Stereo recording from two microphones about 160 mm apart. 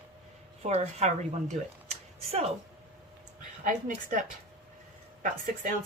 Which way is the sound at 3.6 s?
55° right (ahead or behind).